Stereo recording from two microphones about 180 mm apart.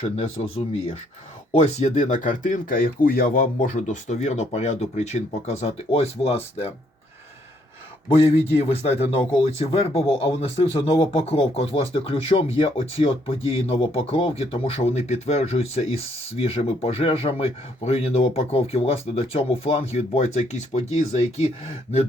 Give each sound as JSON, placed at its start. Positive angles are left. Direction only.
{"t": 0.0, "sound": "a man's voice", "side_deg": 35}
{"t": 8.1, "sound": "a man's voice", "side_deg": 35}